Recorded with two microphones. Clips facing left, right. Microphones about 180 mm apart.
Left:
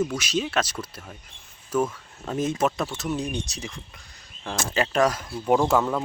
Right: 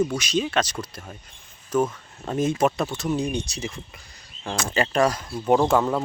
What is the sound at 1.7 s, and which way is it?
A man's voice, 5° right (ahead or behind).